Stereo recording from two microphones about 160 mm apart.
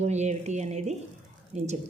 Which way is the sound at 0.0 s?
45° right (ahead or behind).